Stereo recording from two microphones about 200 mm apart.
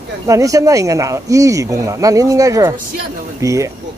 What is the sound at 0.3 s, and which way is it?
Speech, 15° right (ahead or behind).